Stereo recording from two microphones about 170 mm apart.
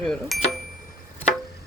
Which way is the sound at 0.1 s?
Centre (ahead or behind).